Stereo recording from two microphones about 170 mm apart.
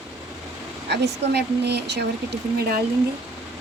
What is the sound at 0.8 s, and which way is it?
Speech, 80° right.